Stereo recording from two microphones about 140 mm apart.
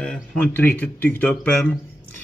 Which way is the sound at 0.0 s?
5° left (ahead or behind).